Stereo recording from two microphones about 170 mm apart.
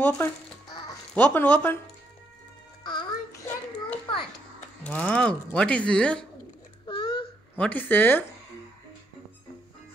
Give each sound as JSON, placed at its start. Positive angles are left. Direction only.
{"t": 0.0, "sound": "speech", "side_deg": 10}
{"t": 0.7, "sound": "music", "side_deg": 20}
{"t": 1.1, "sound": "speech", "side_deg": 10}
{"t": 2.8, "sound": "a sound", "side_deg": 25}
{"t": 4.8, "sound": "speech", "side_deg": 10}
{"t": 6.9, "sound": "a sound", "side_deg": 25}
{"t": 7.5, "sound": "speech", "side_deg": 10}